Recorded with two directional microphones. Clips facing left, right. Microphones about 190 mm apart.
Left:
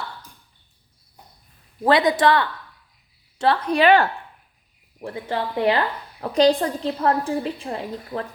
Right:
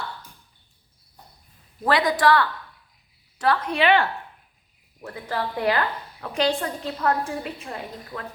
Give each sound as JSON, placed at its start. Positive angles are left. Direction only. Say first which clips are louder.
{"t": 1.8, "sound": "a woman's voice", "louder": "left 3 dB", "side_deg": 25}
{"t": 3.7, "sound": "a woman's voice", "louder": "left 5 dB", "side_deg": 40}
{"t": 4.9, "sound": "a woman's voice", "louder": "left 3 dB", "side_deg": 25}
{"t": 6.1, "sound": "a woman's voice", "louder": "left 7 dB", "side_deg": 35}